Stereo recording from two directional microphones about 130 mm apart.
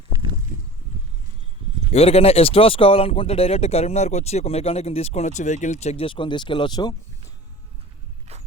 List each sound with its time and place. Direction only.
1.9 s speech: 50° left (ahead or behind)
6.1 s speech: 40° left (ahead or behind)
8.3 s a sound: 55° right (ahead or behind)